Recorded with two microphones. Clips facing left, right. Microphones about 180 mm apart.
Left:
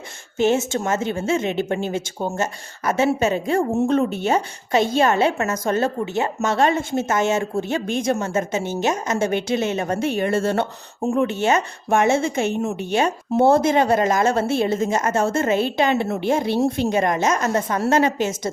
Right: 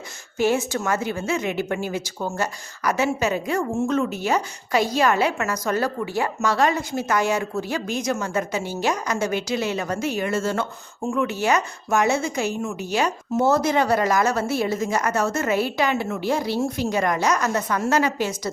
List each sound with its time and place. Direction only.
0.3 s a woman's voice: 25° left (ahead or behind)
10.4 s speech: 60° left (ahead or behind)
11.0 s a woman's voice: 35° left (ahead or behind)